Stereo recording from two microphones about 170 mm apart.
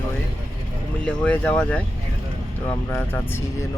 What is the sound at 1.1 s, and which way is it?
Speech, 10° left (ahead or behind).